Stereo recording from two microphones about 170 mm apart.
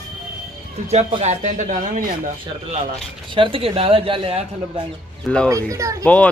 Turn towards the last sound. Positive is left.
turn(degrees=-20)  # may be behind; listen again after turning